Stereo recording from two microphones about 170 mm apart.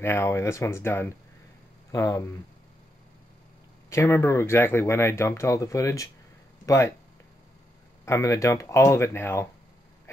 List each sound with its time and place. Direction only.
0.0 s speech: 15° left (ahead or behind)
3.9 s speech: 15° left (ahead or behind)
8.0 s speech: 15° left (ahead or behind)